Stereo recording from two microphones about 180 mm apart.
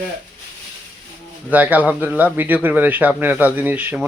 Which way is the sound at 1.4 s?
10° right (ahead or behind).